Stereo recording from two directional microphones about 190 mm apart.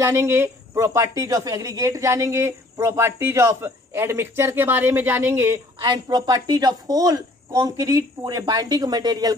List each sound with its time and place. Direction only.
0.0 s speech: 15° right (ahead or behind)
5.8 s a woman's voice: 20° right (ahead or behind)